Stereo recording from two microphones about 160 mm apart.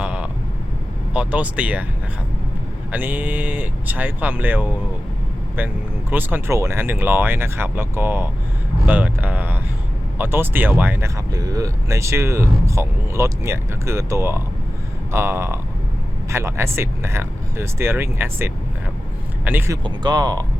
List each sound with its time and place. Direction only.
0.0 s vehicle: 10° right (ahead or behind)
1.1 s speech: 10° right (ahead or behind)
2.9 s speech: 10° right (ahead or behind)
11.3 s speech: 20° right (ahead or behind)
19.8 s speech: 25° right (ahead or behind)